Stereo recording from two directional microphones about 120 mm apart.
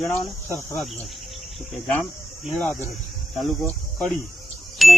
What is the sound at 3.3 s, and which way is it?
Speech, centre (ahead or behind).